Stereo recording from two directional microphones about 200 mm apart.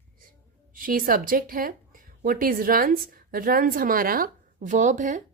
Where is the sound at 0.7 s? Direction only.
45° right (ahead or behind).